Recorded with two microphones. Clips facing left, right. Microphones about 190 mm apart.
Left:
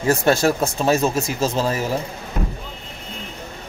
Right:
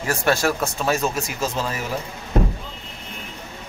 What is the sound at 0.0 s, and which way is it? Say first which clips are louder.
Speech: left 4 dB; 20° left (ahead or behind).